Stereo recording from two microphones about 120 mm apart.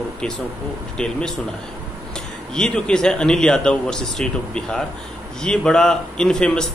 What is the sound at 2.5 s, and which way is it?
Speech, 5° left (ahead or behind).